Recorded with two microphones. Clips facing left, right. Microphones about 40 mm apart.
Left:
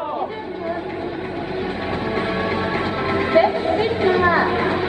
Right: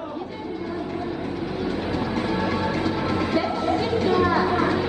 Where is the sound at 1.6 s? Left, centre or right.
Left.